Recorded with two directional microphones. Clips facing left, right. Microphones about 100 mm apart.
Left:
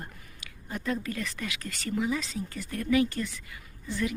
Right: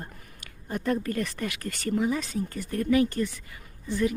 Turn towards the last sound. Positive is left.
turn(degrees=-40)  # may be behind; listen again after turning